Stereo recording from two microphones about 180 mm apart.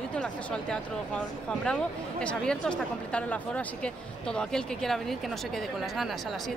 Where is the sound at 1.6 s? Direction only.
5° left (ahead or behind).